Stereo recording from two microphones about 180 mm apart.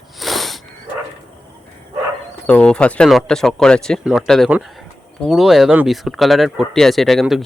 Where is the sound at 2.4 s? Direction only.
5° left (ahead or behind).